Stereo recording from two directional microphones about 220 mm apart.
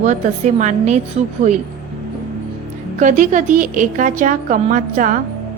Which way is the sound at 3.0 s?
35° right (ahead or behind).